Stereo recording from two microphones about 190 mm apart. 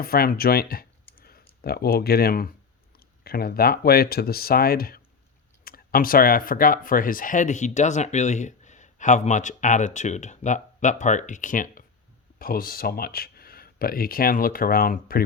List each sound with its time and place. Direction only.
0.0 s speech: 50° left (ahead or behind)